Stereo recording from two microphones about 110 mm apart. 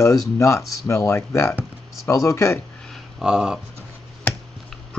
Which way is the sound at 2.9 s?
5° right (ahead or behind).